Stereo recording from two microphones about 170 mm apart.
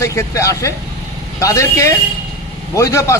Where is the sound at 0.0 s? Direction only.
15° left (ahead or behind).